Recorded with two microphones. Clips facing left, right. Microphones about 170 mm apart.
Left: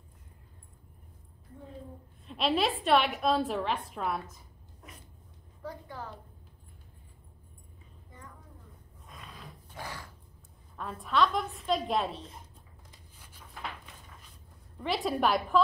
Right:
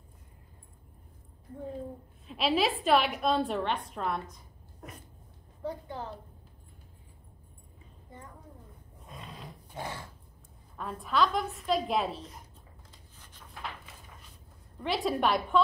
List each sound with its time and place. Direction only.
2.2 s a woman's voice: centre (ahead or behind)
5.6 s a woman's voice: 25° right (ahead or behind)
9.0 s a sound: 25° right (ahead or behind)
10.8 s a woman's voice: centre (ahead or behind)
13.2 s a sound: 10° left (ahead or behind)
14.8 s a woman's voice: centre (ahead or behind)